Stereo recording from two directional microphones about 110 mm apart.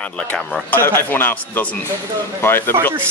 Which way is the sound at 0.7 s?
20° left (ahead or behind).